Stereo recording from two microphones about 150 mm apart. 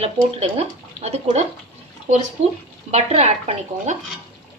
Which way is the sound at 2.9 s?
45° right (ahead or behind).